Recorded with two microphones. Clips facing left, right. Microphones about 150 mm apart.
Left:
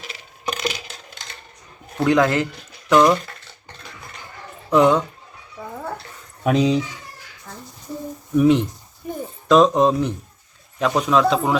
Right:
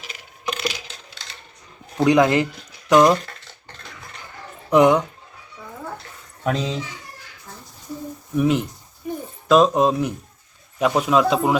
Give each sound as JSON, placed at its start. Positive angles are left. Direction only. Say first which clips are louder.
{"t": 2.0, "sound": "speech", "louder": "right 1 dB", "side_deg": -15}
{"t": 4.7, "sound": "speech", "louder": "right 1 dB", "side_deg": -15}
{"t": 6.4, "sound": "speech", "louder": "left 6 dB", "side_deg": 15}
{"t": 8.4, "sound": "speech", "louder": "left 4 dB", "side_deg": -5}